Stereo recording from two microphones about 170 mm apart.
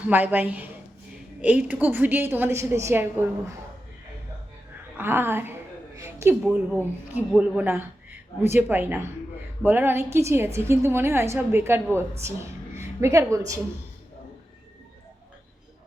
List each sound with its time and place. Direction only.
0.0 s a woman's voice: 10° right (ahead or behind)
4.9 s a woman's voice: 15° right (ahead or behind)